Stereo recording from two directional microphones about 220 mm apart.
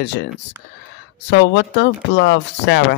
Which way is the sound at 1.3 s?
50° left (ahead or behind).